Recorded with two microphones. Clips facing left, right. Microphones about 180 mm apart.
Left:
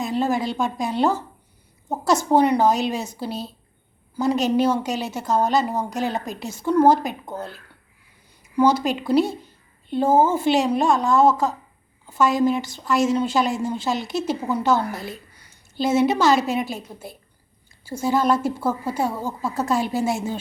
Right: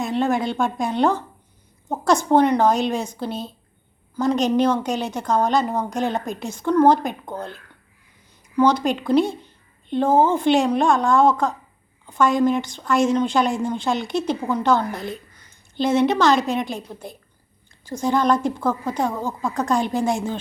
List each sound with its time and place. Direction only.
0.0 s a woman's voice: centre (ahead or behind)